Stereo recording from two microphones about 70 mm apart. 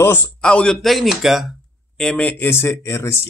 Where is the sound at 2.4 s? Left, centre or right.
Left.